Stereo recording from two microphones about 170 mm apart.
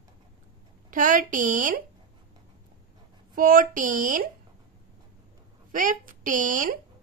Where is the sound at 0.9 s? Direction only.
50° right (ahead or behind).